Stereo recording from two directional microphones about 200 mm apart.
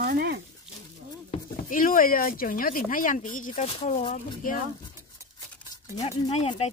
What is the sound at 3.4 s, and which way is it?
Speech, 30° left (ahead or behind).